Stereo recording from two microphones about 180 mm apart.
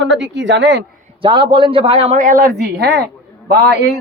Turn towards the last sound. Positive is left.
turn(degrees=-70)  # may be behind; listen again after turning